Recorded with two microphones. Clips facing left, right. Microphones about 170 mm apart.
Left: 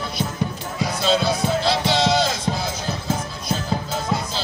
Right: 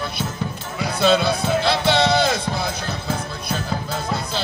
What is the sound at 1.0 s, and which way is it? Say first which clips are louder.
Music: right 3 dB; 60° right (ahead or behind).